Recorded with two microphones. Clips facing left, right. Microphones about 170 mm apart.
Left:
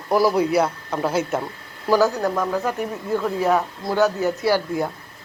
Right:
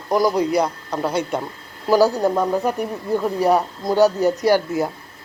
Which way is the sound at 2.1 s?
20° right (ahead or behind).